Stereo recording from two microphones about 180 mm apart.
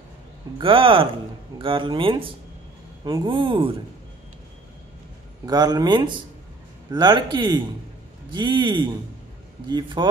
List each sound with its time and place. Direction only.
0.6 s speech: 30° right (ahead or behind)
5.4 s speech: 20° right (ahead or behind)